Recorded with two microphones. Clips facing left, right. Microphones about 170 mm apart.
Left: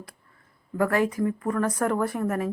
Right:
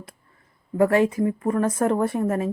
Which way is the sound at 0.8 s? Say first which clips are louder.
Right 5 dB; 25° right (ahead or behind).